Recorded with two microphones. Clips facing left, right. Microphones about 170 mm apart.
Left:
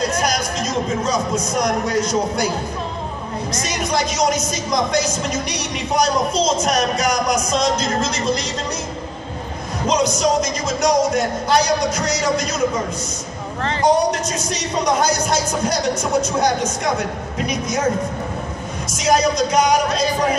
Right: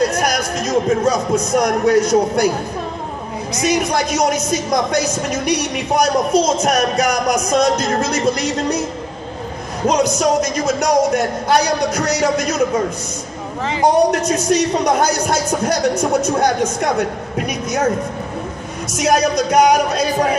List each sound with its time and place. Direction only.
0.1 s music: 60° right (ahead or behind)
1.5 s speech: 60° right (ahead or behind)
3.7 s speech: 60° right (ahead or behind)
9.8 s speech: 60° right (ahead or behind)
13.8 s speech: 60° right (ahead or behind)
18.9 s speech: 60° right (ahead or behind)